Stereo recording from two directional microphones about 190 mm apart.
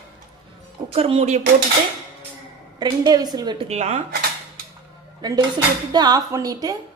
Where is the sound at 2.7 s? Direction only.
20° right (ahead or behind); by 4.2 s 35° right (ahead or behind).